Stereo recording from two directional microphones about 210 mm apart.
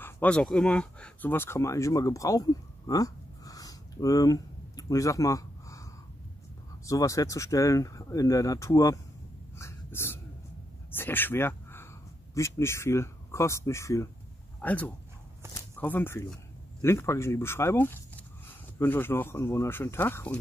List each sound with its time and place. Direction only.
0.0 s speech: 5° left (ahead or behind)
6.9 s speech: 15° left (ahead or behind)
9.6 s whispering: 10° left (ahead or behind)
11.0 s a sound: 10° left (ahead or behind)
12.4 s speech: 15° left (ahead or behind)